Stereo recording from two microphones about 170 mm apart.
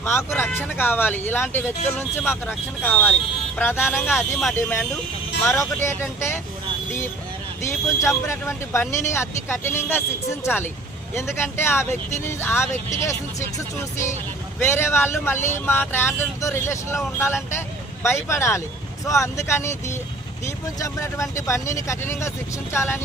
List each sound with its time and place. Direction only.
0.0 s speech: 15° left (ahead or behind)
2.2 s speech: 5° right (ahead or behind)
2.8 s speech: 10° left (ahead or behind)
5.4 s speech: 15° left (ahead or behind)
7.6 s speech: 15° left (ahead or behind)
14.6 s speech: 15° left (ahead or behind)